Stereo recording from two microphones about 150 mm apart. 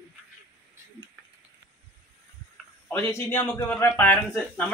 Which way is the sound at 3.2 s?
15° left (ahead or behind).